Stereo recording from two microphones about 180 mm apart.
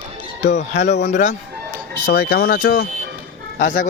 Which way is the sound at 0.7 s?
40° left (ahead or behind).